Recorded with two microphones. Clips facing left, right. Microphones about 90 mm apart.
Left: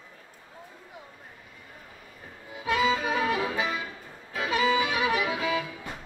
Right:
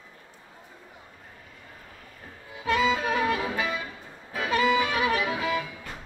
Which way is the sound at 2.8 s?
Centre (ahead or behind).